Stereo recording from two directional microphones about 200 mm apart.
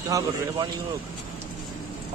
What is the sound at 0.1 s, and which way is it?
Speech, 15° right (ahead or behind).